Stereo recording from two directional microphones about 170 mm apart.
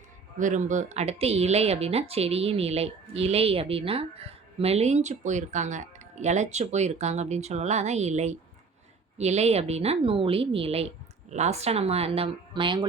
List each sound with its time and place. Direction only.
0.3 s speech: 45° right (ahead or behind); by 12.8 s 30° right (ahead or behind)